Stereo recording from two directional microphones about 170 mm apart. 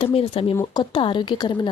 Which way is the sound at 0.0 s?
35° left (ahead or behind).